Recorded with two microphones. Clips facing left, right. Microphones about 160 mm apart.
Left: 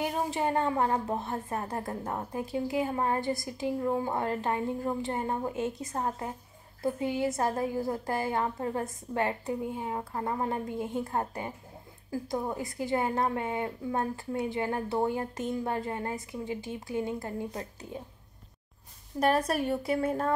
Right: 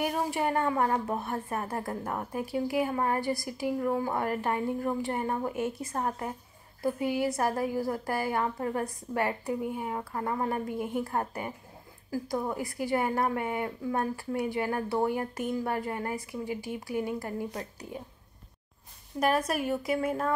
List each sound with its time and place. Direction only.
0.0 s a woman's voice: 20° left (ahead or behind)
19.1 s speech: 30° left (ahead or behind)